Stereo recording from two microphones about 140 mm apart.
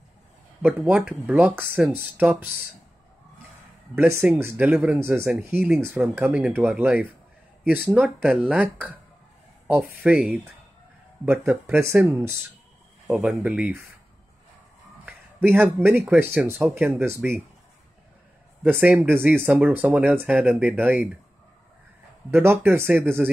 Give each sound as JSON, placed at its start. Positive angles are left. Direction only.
{"t": 0.6, "sound": "speech", "side_deg": -10}
{"t": 3.9, "sound": "speech", "side_deg": -15}
{"t": 13.0, "sound": "speech", "side_deg": -5}
{"t": 15.0, "sound": "speech", "side_deg": -15}
{"t": 18.6, "sound": "speech", "side_deg": -10}
{"t": 22.3, "sound": "speech", "side_deg": -15}